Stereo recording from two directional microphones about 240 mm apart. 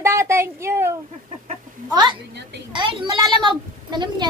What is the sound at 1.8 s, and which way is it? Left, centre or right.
Speech, centre.